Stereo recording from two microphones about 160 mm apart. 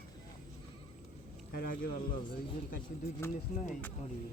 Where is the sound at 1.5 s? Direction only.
65° left (ahead or behind).